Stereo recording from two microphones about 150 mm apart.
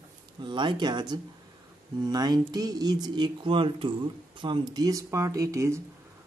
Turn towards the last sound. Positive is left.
turn(degrees=-20)  # may be behind; listen again after turning